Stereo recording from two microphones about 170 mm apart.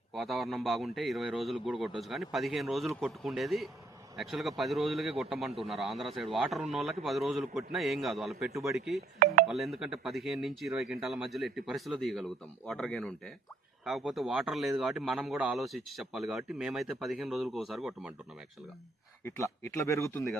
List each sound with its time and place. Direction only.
0.1 s a man's voice: centre (ahead or behind)
9.1 s speech: 45° right (ahead or behind)
9.5 s a man's voice: centre (ahead or behind)
19.2 s speech: 15° left (ahead or behind)